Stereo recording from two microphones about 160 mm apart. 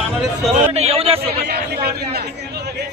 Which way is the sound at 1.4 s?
75° right (ahead or behind).